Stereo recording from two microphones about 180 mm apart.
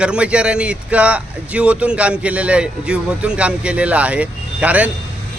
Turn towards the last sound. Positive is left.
turn(degrees=-10)  # may be behind; listen again after turning